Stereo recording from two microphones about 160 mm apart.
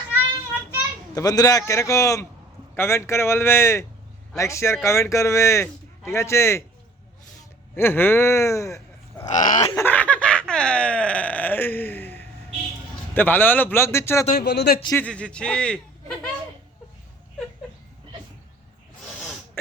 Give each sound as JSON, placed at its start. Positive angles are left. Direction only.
{"t": 1.1, "sound": "a man's voice", "side_deg": 25}
{"t": 7.8, "sound": "speech", "side_deg": 15}
{"t": 9.2, "sound": "fowl", "side_deg": 50}
{"t": 9.7, "sound": "a sound", "side_deg": 10}
{"t": 13.1, "sound": "a man's voice", "side_deg": 10}
{"t": 14.3, "sound": "speech", "side_deg": 80}
{"t": 14.9, "sound": "a man's voice", "side_deg": 5}